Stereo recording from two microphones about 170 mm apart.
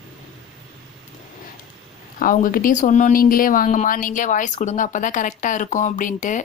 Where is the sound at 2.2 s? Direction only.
55° left (ahead or behind).